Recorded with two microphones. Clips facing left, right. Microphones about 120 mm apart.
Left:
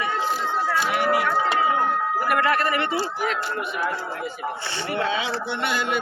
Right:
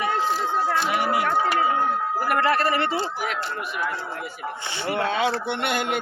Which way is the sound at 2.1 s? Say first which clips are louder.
Right 1 dB; 30° right (ahead or behind).